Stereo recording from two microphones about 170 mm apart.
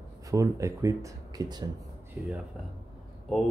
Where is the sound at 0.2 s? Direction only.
20° right (ahead or behind).